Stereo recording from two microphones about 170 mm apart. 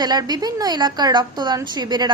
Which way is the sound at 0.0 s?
25° right (ahead or behind).